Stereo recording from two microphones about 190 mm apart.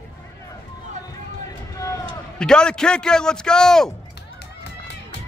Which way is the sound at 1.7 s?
15° left (ahead or behind).